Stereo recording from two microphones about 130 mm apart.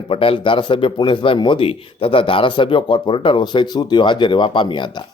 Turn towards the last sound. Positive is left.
turn(degrees=35)  # may be behind; listen again after turning